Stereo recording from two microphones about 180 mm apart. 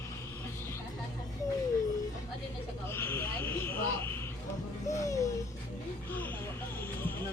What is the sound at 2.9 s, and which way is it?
Speech, 10° left (ahead or behind).